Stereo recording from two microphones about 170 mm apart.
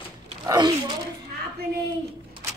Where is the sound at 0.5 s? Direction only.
25° right (ahead or behind).